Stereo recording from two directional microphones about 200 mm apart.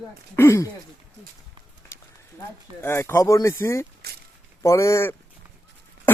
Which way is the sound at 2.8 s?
10° left (ahead or behind).